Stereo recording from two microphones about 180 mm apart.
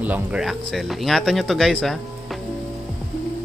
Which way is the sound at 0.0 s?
5° right (ahead or behind).